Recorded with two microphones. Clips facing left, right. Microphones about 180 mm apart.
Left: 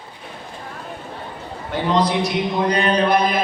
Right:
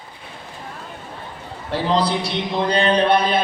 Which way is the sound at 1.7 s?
30° right (ahead or behind).